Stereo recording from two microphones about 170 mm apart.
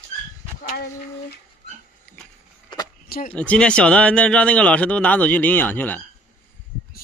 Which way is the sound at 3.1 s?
55° left (ahead or behind).